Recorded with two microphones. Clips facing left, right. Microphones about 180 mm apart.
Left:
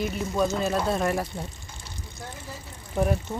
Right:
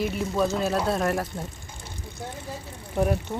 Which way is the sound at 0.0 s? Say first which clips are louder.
Right 1 dB; centre (ahead or behind).